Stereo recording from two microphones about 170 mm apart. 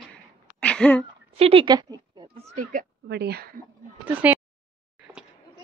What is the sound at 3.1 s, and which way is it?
Speech, 70° right (ahead or behind).